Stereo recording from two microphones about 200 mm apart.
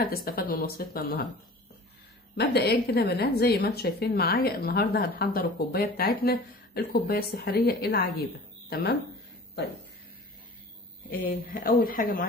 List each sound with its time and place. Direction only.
0.0 s a woman's voice: 50° left (ahead or behind)
2.3 s a woman's voice: 55° left (ahead or behind)
11.2 s a woman's voice: 45° left (ahead or behind)